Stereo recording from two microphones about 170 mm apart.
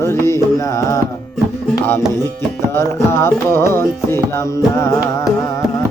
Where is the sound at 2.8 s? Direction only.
15° left (ahead or behind).